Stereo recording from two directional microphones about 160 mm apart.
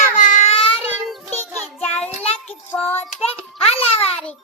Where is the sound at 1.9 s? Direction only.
40° left (ahead or behind).